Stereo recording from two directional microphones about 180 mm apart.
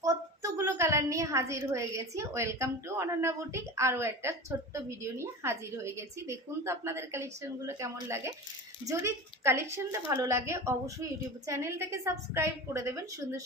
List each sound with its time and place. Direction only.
0.0 s a woman's voice: 15° right (ahead or behind)